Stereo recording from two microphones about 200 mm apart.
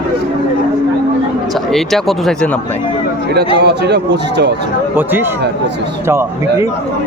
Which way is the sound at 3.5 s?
55° right (ahead or behind).